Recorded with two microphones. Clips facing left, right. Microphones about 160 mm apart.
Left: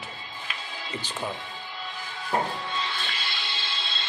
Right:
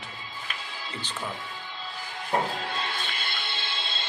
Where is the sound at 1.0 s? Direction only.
10° left (ahead or behind).